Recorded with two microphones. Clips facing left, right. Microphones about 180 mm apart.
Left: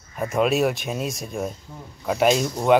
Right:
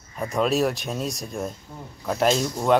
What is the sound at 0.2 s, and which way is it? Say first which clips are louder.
Speech: left 2 dB; 5° left (ahead or behind).